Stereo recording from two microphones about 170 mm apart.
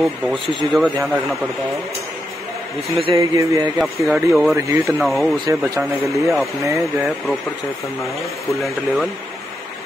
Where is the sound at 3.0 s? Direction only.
30° right (ahead or behind).